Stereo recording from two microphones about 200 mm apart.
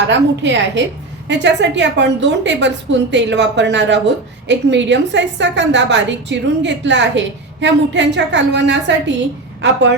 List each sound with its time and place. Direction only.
0.1 s a woman's voice: 65° right (ahead or behind)